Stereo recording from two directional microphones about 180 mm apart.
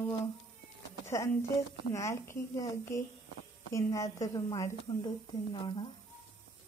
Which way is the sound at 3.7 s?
20° left (ahead or behind).